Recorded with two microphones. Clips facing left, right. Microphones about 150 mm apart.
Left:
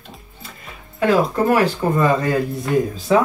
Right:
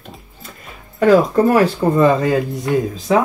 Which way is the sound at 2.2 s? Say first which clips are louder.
Right 3 dB; 20° right (ahead or behind).